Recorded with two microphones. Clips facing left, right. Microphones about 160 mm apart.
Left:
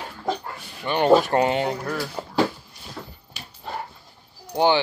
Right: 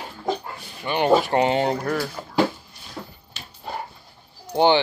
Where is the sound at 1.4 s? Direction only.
30° right (ahead or behind).